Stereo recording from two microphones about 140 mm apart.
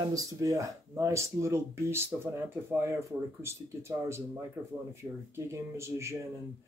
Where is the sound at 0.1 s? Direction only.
25° right (ahead or behind).